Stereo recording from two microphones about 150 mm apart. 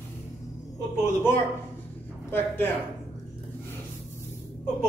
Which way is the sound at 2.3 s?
15° left (ahead or behind).